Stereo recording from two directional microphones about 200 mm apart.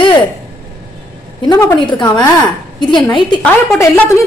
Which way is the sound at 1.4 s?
20° left (ahead or behind).